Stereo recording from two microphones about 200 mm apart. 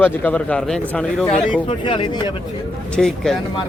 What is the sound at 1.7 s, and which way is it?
Speech, 25° left (ahead or behind).